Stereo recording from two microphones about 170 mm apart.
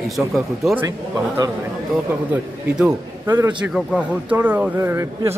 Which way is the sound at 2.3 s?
5° right (ahead or behind).